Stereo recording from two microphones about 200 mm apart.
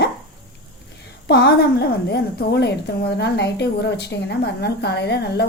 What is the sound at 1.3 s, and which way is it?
Speech, 55° left (ahead or behind).